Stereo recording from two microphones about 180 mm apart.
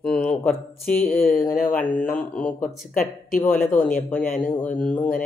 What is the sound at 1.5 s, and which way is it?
Speech, 50° left (ahead or behind).